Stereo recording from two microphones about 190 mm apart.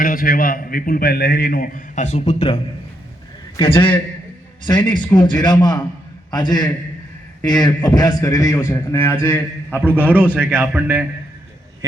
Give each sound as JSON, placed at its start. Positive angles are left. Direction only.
{"t": 0.0, "sound": "a man's voice", "side_deg": 45}
{"t": 3.6, "sound": "a man's voice", "side_deg": 25}
{"t": 5.1, "sound": "a man's voice", "side_deg": 20}
{"t": 10.3, "sound": "speech", "side_deg": -10}